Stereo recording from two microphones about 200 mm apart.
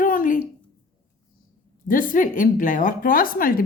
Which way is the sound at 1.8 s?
45° left (ahead or behind).